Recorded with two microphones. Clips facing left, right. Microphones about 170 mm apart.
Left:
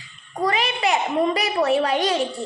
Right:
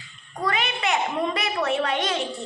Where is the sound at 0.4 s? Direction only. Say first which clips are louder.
Left 4 dB; 35° left (ahead or behind).